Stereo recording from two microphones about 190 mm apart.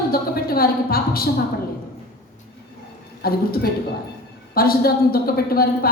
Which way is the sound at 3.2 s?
55° left (ahead or behind).